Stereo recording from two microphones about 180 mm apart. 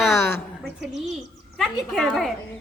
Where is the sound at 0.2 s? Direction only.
10° left (ahead or behind).